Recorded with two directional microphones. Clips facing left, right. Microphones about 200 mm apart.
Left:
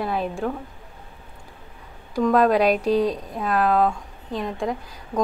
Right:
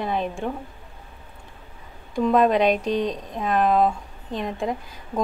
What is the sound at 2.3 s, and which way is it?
A woman's voice, centre (ahead or behind).